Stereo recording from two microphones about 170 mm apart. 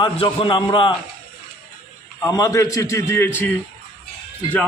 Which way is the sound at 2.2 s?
20° left (ahead or behind).